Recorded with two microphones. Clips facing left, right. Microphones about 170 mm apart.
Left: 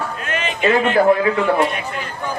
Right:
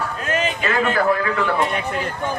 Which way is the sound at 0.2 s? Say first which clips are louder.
Right 2 dB; 35° right (ahead or behind).